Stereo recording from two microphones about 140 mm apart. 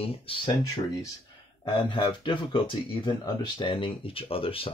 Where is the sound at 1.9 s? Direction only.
35° left (ahead or behind).